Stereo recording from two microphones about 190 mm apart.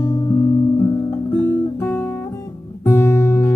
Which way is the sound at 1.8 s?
10° left (ahead or behind).